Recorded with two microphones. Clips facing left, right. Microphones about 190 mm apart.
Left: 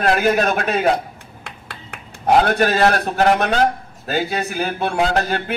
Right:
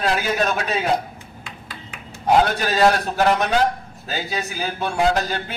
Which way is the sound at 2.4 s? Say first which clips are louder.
Left 2 dB; 55° left (ahead or behind).